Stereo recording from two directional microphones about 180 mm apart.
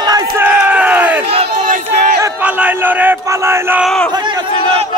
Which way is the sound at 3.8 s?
5° left (ahead or behind).